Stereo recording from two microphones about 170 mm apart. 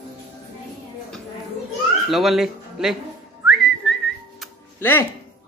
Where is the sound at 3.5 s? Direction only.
Centre (ahead or behind).